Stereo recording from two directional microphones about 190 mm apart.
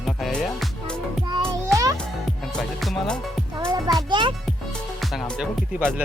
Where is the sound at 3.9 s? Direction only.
25° right (ahead or behind).